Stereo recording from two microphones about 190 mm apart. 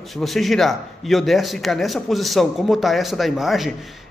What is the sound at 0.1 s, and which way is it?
A man's voice, centre (ahead or behind).